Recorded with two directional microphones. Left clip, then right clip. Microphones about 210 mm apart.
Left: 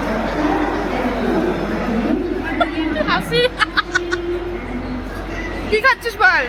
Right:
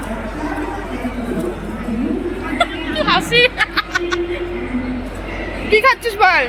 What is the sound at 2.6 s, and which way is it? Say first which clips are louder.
Music: right 2 dB; 15° right (ahead or behind).